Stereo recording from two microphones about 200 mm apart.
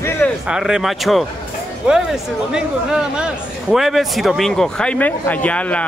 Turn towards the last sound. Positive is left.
turn(degrees=5)  # may be behind; listen again after turning